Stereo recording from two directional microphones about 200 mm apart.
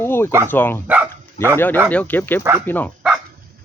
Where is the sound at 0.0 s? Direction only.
10° left (ahead or behind).